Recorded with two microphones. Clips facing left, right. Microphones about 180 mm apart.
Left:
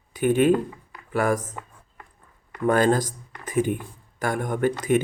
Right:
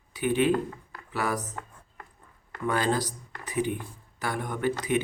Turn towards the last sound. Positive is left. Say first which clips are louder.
# left 5 dB
turn(degrees=50)  # may be behind; listen again after turning